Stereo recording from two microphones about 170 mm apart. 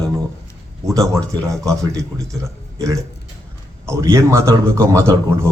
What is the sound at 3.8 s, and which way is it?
A man's voice, 15° right (ahead or behind).